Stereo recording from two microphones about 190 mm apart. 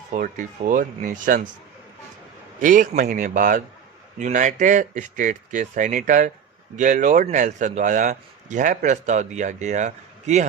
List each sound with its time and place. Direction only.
0.1 s speech: 45° right (ahead or behind)
2.6 s speech: 45° right (ahead or behind)